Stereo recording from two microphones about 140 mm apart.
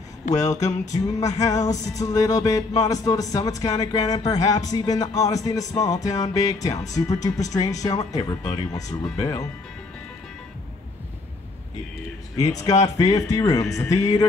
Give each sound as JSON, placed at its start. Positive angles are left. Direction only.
{"t": 0.2, "sound": "a sound", "side_deg": 65}
{"t": 0.7, "sound": "music", "side_deg": 25}
{"t": 12.4, "sound": "music", "side_deg": 25}